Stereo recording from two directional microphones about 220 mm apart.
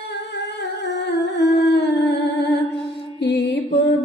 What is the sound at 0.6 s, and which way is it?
Humming, 50° left (ahead or behind).